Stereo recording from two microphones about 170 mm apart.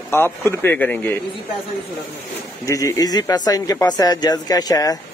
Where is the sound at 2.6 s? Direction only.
20° left (ahead or behind).